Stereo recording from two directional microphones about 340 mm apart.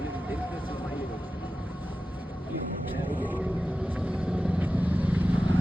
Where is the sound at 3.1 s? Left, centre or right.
Centre.